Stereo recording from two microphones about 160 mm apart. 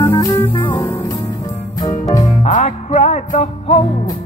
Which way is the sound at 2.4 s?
45° left (ahead or behind).